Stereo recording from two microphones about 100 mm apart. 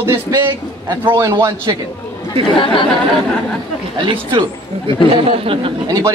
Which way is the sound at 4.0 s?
55° right (ahead or behind).